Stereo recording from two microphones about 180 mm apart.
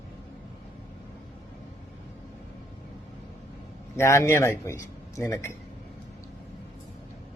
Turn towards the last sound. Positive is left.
turn(degrees=15)  # may be behind; listen again after turning